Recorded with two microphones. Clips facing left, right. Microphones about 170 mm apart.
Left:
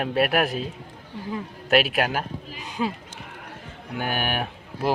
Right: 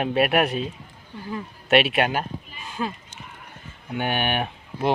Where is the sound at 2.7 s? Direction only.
15° left (ahead or behind).